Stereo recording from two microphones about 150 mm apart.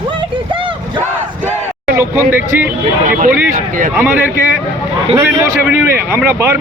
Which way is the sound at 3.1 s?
65° right (ahead or behind).